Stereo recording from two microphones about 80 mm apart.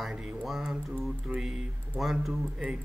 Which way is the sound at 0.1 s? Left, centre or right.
Centre.